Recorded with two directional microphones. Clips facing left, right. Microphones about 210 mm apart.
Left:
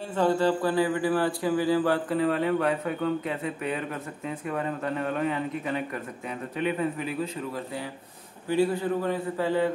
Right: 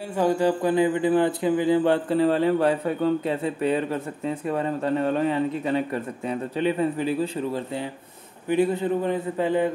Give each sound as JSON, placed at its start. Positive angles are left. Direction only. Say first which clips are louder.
{"t": 0.1, "sound": "speech", "louder": "right 2 dB", "side_deg": -15}